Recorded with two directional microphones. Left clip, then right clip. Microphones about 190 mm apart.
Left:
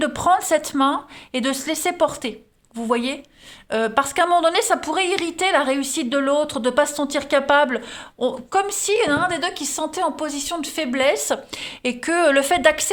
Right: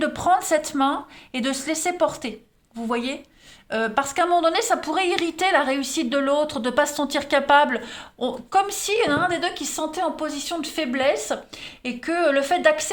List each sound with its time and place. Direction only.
0.0 s a woman's voice: 30° left (ahead or behind)